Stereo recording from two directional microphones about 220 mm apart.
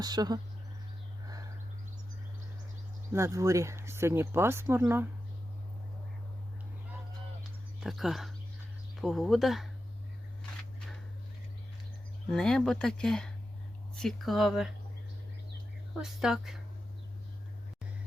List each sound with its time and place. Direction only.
0.0 s speech: 20° right (ahead or behind)
3.1 s speech: 10° right (ahead or behind)
7.8 s speech: centre (ahead or behind)
12.3 s speech: 5° left (ahead or behind)
16.0 s speech: 5° right (ahead or behind)